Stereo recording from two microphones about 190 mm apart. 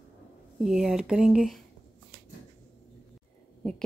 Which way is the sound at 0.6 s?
Centre (ahead or behind).